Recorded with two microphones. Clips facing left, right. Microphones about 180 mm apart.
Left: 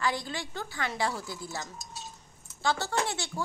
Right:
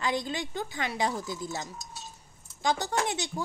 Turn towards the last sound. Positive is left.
turn(degrees=-15)  # may be behind; listen again after turning